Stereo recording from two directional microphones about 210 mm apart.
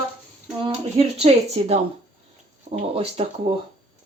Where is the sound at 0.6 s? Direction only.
30° right (ahead or behind).